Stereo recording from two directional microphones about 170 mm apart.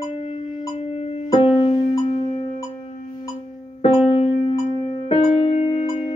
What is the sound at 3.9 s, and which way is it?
Music, 35° left (ahead or behind).